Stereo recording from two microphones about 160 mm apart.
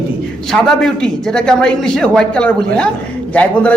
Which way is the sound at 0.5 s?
5° left (ahead or behind).